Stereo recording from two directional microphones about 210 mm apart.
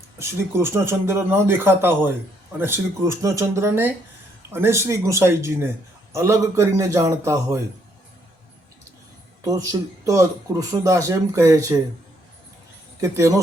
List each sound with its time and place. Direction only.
0.2 s speech: 10° right (ahead or behind)
9.4 s speech: 15° right (ahead or behind)
13.0 s speech: 15° right (ahead or behind)